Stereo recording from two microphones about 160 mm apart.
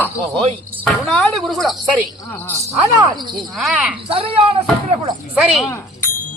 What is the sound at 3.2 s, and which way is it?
Speech, 30° right (ahead or behind).